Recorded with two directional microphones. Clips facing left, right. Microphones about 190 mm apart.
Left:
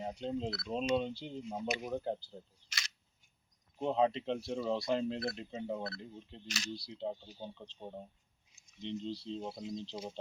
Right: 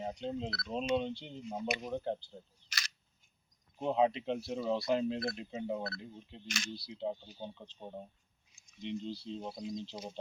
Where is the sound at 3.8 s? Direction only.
5° right (ahead or behind).